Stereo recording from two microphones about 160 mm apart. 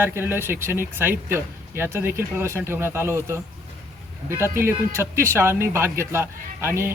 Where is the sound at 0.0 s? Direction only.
15° right (ahead or behind).